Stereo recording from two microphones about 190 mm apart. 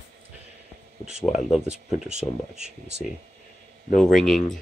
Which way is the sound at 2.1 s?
35° right (ahead or behind).